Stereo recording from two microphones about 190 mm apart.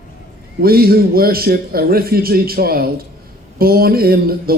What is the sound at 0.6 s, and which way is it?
Speech, 50° right (ahead or behind).